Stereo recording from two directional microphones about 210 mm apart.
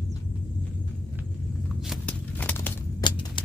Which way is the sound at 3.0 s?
20° left (ahead or behind).